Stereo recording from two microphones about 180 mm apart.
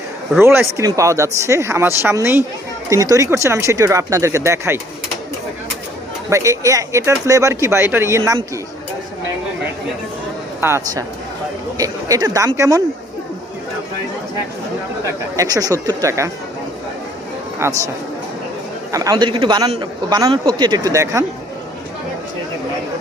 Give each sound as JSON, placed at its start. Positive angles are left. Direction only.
{"t": 0.3, "sound": "speech", "side_deg": -15}
{"t": 6.3, "sound": "speech", "side_deg": -15}
{"t": 10.6, "sound": "speech", "side_deg": -15}
{"t": 15.4, "sound": "speech", "side_deg": -20}
{"t": 17.6, "sound": "speech", "side_deg": -20}